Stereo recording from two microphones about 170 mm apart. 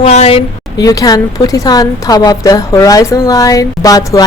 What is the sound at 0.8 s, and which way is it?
A woman's voice, 20° left (ahead or behind).